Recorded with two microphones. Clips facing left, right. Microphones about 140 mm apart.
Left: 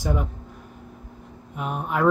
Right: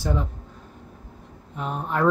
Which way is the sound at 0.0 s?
15° left (ahead or behind).